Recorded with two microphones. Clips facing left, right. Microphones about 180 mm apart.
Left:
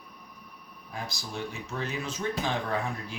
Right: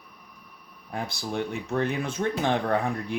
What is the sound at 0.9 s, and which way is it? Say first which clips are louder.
Speech: right 6 dB; 55° right (ahead or behind).